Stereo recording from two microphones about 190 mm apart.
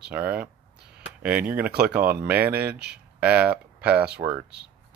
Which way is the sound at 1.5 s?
10° right (ahead or behind).